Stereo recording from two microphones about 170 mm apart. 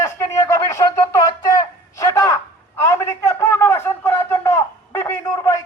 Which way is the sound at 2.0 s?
20° left (ahead or behind).